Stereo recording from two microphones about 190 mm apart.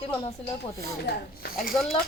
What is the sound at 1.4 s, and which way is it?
Speech, 50° left (ahead or behind).